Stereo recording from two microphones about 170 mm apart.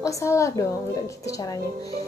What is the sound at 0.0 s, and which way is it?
A woman's voice, 15° left (ahead or behind).